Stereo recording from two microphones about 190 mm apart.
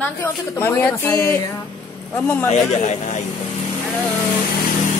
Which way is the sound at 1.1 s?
20° left (ahead or behind).